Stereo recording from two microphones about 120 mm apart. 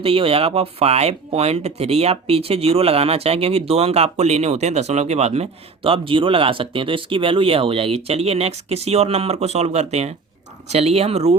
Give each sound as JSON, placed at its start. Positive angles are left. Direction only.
{"t": 0.0, "sound": "speech", "side_deg": -50}